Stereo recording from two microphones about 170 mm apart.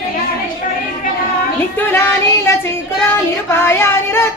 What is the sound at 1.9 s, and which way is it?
Female singing, 15° left (ahead or behind).